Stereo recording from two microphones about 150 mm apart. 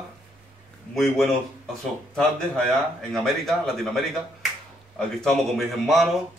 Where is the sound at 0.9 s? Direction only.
5° left (ahead or behind).